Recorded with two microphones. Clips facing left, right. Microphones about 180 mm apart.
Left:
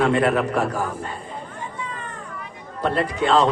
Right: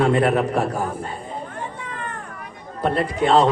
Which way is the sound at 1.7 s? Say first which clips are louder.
Right 1 dB; 60° right (ahead or behind).